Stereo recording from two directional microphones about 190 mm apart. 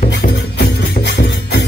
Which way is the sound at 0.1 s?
60° left (ahead or behind).